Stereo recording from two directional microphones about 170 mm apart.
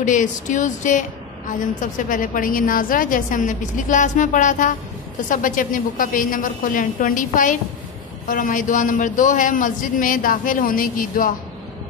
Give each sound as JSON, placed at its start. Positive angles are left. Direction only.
{"t": 0.0, "sound": "a man's voice", "side_deg": 50}